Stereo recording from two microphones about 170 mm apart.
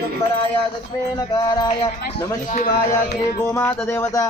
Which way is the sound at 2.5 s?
45° left (ahead or behind).